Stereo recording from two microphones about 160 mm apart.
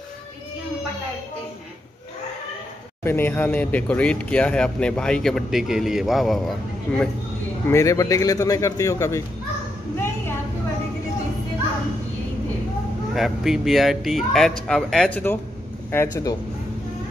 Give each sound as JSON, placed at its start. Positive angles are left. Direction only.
{"t": 3.0, "sound": "speech", "side_deg": 10}
{"t": 7.6, "sound": "a man's voice", "side_deg": 20}
{"t": 9.9, "sound": "a sound", "side_deg": 15}
{"t": 13.1, "sound": "speech", "side_deg": 0}